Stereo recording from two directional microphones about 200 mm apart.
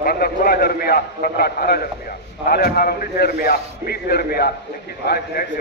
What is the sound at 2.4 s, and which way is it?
A man's voice, 50° left (ahead or behind).